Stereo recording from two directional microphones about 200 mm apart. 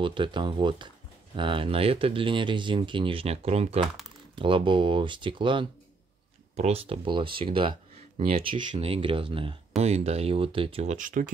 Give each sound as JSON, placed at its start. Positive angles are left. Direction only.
{"t": 0.0, "sound": "speech", "side_deg": -25}